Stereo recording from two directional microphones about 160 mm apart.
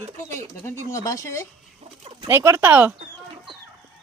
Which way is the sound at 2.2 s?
15° right (ahead or behind).